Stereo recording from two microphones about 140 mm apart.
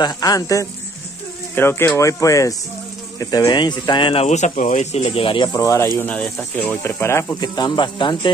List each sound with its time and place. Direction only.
0.0 s speech: 30° left (ahead or behind)
5.9 s speech: 10° left (ahead or behind); by 8.3 s 35° left (ahead or behind)